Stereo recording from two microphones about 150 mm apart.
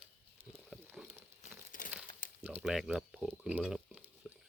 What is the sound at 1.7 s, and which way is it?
Crumpling, 65° left (ahead or behind).